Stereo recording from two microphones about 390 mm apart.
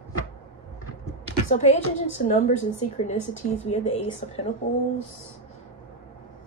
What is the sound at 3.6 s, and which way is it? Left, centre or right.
Speech, centre.